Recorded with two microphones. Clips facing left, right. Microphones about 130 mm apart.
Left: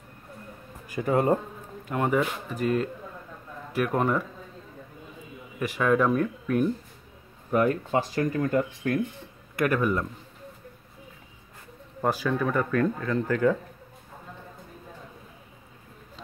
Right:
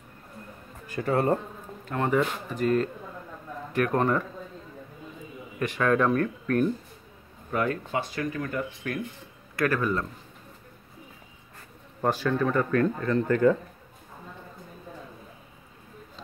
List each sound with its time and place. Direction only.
0.8 s speech: 15° left (ahead or behind)
5.6 s speech: 5° left (ahead or behind)
7.9 s speech: 35° left (ahead or behind)
9.6 s speech: 15° left (ahead or behind)
12.0 s speech: 10° left (ahead or behind)